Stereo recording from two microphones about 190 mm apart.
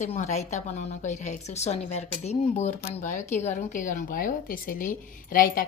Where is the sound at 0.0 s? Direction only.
40° left (ahead or behind).